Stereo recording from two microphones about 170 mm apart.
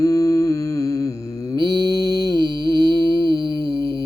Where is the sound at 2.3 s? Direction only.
25° right (ahead or behind).